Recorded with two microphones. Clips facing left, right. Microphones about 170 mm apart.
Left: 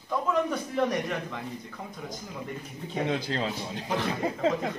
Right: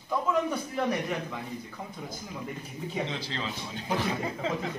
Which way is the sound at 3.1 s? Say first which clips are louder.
Left 6 dB; 50° left (ahead or behind).